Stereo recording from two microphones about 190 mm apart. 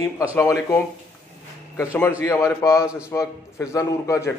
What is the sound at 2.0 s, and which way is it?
A man's voice, 15° left (ahead or behind).